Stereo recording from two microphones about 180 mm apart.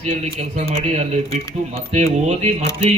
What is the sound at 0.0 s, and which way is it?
Speech, 40° right (ahead or behind).